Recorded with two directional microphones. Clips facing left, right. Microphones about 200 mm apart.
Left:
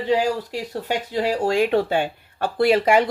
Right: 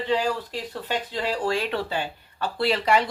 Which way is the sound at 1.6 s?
50° left (ahead or behind).